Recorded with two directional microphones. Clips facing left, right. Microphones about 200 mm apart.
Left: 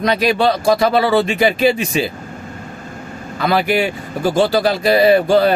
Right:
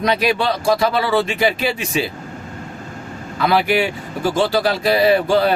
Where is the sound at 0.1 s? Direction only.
45° left (ahead or behind).